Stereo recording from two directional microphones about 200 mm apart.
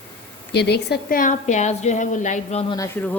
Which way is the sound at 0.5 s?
55° left (ahead or behind).